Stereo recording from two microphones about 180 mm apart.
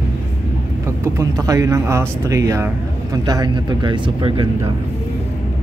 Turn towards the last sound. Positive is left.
turn(degrees=-30)  # may be behind; listen again after turning